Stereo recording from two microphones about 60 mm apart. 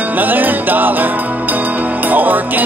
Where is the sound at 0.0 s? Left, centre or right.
Right.